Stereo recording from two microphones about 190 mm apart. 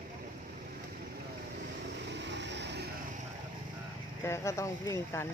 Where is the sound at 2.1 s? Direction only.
65° right (ahead or behind).